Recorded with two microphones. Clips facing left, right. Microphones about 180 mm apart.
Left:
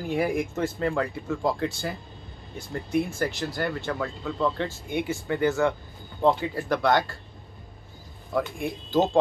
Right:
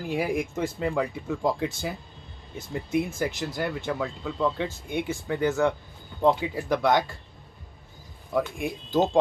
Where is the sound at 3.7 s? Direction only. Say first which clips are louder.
Even; 5° right (ahead or behind).